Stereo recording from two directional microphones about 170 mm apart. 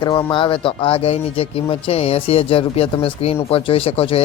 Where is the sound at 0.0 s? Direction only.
25° left (ahead or behind).